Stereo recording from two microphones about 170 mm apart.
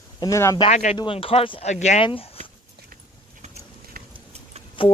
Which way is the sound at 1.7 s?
45° left (ahead or behind).